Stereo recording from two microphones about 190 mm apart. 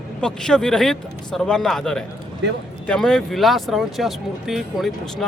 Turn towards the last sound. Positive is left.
turn(degrees=0)  # may be behind; listen again after turning